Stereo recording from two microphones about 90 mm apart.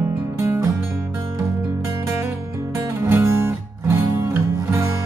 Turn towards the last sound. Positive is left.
turn(degrees=-30)  # may be behind; listen again after turning